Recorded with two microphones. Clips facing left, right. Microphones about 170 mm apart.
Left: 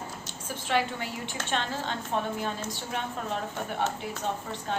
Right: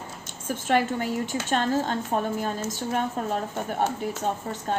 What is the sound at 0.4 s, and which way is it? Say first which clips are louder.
Speech: right 5 dB; 50° right (ahead or behind).